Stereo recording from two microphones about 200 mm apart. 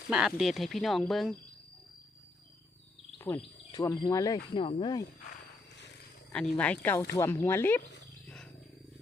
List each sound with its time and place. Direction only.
0.1 s speech: centre (ahead or behind)
3.2 s speech: 15° left (ahead or behind)
6.3 s speech: 5° left (ahead or behind)